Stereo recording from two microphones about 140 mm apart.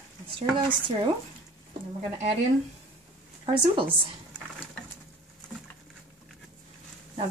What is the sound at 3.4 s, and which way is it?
Speech, 40° right (ahead or behind).